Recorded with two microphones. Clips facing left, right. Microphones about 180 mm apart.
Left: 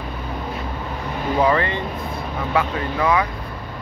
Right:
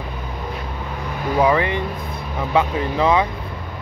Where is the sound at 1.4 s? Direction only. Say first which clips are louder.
Right 2 dB; 15° right (ahead or behind).